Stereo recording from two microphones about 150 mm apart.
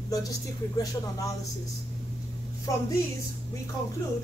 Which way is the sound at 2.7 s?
20° left (ahead or behind).